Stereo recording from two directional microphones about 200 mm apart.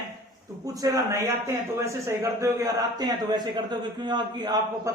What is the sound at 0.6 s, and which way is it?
A man's voice, 15° right (ahead or behind).